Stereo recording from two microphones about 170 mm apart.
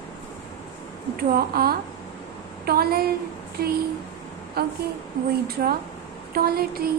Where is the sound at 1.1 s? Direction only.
60° right (ahead or behind).